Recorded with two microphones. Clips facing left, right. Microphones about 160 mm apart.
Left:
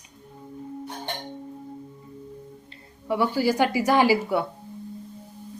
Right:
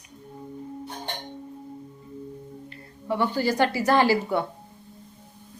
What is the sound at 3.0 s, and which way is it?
Speech, 10° left (ahead or behind).